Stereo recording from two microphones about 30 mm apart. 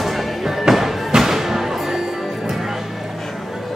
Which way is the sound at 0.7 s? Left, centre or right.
Centre.